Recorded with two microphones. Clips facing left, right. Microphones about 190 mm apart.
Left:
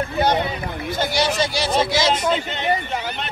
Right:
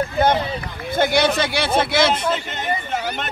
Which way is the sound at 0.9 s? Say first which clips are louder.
Right 4 dB; 55° right (ahead or behind).